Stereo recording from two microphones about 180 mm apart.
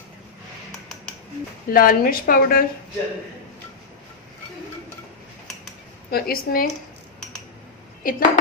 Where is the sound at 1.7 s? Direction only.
55° left (ahead or behind).